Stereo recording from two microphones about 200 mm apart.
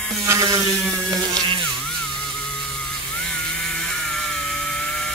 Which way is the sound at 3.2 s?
5° left (ahead or behind).